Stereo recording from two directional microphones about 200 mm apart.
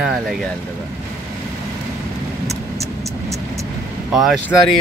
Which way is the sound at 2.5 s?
15° right (ahead or behind).